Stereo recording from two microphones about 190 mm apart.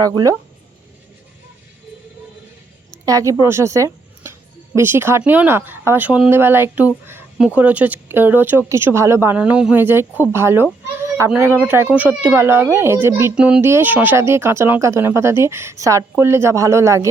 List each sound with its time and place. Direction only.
0.0 s speech: 20° right (ahead or behind)
2.9 s a woman's voice: 15° right (ahead or behind)